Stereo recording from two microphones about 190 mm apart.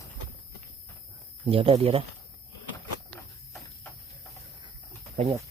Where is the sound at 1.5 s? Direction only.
30° right (ahead or behind).